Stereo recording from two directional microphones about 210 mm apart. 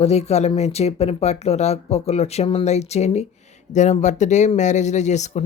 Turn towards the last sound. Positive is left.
turn(degrees=35)  # may be behind; listen again after turning